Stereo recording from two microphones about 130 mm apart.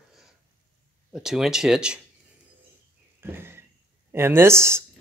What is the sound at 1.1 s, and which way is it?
Speech, 5° right (ahead or behind).